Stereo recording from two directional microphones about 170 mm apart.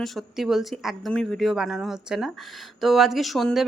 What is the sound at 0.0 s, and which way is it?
A woman's voice, centre (ahead or behind).